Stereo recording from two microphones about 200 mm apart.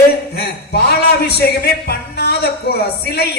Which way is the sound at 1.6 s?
55° left (ahead or behind).